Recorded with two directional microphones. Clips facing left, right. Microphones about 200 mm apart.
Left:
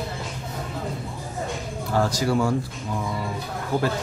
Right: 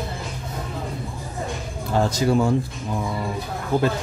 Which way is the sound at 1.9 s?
20° right (ahead or behind).